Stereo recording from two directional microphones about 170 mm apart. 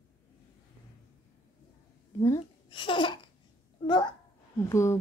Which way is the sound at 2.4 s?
30° left (ahead or behind).